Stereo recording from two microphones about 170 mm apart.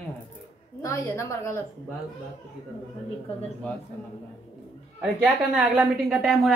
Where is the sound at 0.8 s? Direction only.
15° left (ahead or behind).